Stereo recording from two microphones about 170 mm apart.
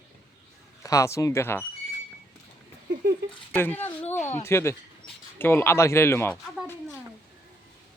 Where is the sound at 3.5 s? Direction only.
10° left (ahead or behind).